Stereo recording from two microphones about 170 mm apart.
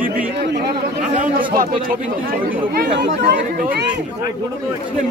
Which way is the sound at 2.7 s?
70° right (ahead or behind).